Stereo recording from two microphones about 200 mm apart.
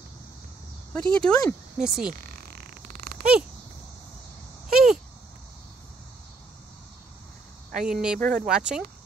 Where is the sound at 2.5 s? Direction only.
50° right (ahead or behind).